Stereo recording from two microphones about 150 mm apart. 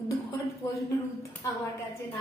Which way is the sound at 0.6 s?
20° left (ahead or behind).